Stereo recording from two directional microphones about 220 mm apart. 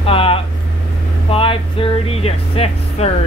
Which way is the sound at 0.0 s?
25° left (ahead or behind).